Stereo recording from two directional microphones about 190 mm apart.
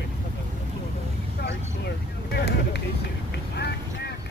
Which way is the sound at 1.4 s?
60° left (ahead or behind).